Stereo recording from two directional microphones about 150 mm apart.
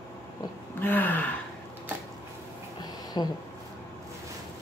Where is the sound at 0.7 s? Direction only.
10° left (ahead or behind).